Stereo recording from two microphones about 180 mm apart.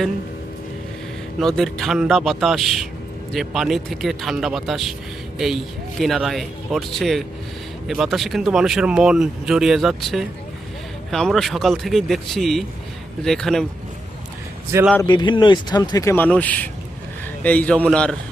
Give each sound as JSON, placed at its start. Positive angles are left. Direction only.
{"t": 1.4, "sound": "speech", "side_deg": 0}
{"t": 15.0, "sound": "a man's voice", "side_deg": 25}